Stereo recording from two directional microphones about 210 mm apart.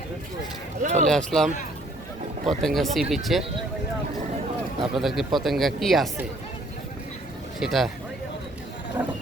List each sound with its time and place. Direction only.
0.8 s speech: 35° right (ahead or behind)
1.0 s speech: centre (ahead or behind)
2.5 s speech: centre (ahead or behind)
4.8 s speech: centre (ahead or behind)
7.6 s speech: centre (ahead or behind)